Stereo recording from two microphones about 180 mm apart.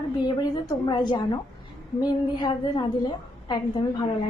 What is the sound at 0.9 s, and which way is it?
A woman's voice, 25° left (ahead or behind).